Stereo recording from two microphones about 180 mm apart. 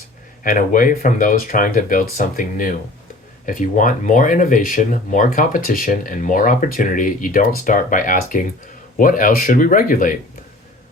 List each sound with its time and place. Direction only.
0.4 s speech: 50° left (ahead or behind)